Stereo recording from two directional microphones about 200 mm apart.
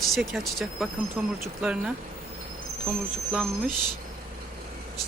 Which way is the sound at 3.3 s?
Centre (ahead or behind).